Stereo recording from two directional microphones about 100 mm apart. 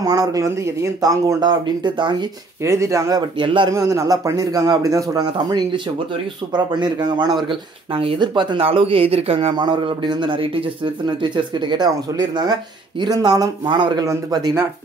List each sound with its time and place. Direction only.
0.0 s speech: 40° right (ahead or behind)
2.6 s speech: 30° right (ahead or behind)
3.2 s speech: 55° right (ahead or behind)
3.7 s a man's voice: 30° right (ahead or behind); by 7.5 s 50° right (ahead or behind)
7.9 s speech: 70° right (ahead or behind)
8.2 s speech: 55° right (ahead or behind); by 9.5 s 80° right
9.5 s a man's voice: 50° right (ahead or behind)